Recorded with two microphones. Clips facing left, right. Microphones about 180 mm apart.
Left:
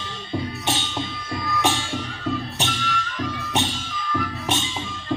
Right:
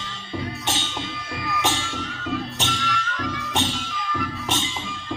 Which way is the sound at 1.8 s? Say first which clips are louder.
Left 3 dB; 15° left (ahead or behind).